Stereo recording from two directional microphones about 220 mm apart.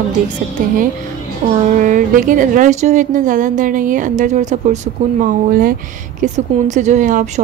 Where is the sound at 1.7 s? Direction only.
35° right (ahead or behind).